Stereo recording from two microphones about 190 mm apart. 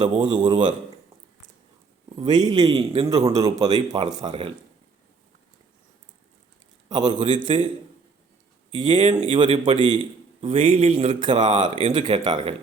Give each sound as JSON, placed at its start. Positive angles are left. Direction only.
{"t": 0.0, "sound": "speech", "side_deg": -25}
{"t": 2.2, "sound": "speech", "side_deg": -20}
{"t": 3.3, "sound": "speech", "side_deg": -20}
{"t": 6.8, "sound": "speech", "side_deg": -20}
{"t": 8.9, "sound": "speech", "side_deg": -25}